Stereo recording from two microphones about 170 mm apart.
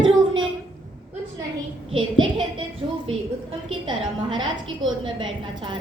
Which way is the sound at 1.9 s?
30° right (ahead or behind).